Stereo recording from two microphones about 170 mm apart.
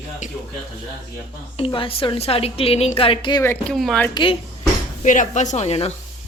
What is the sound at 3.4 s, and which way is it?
Speech, 15° left (ahead or behind).